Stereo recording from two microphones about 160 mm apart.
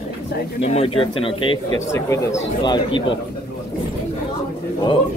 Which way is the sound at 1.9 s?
20° left (ahead or behind).